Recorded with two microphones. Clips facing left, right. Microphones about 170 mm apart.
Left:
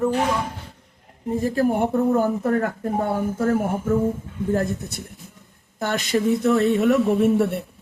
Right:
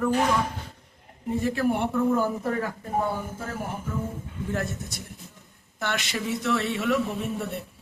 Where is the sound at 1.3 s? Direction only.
40° left (ahead or behind).